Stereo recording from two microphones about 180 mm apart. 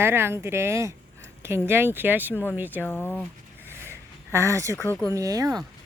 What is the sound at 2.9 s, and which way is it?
Speech, 10° left (ahead or behind).